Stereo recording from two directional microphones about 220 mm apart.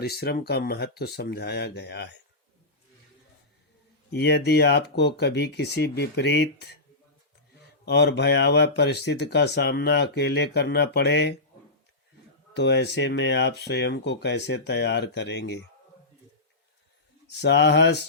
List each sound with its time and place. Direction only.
0.0 s speech: 45° left (ahead or behind)
4.1 s speech: 45° left (ahead or behind)
12.5 s speech: 50° left (ahead or behind)
17.4 s speech: 50° left (ahead or behind)